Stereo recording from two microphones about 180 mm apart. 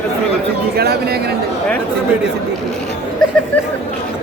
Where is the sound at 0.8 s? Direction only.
60° right (ahead or behind).